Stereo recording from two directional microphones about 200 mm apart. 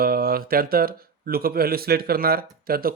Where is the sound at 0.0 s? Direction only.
50° right (ahead or behind).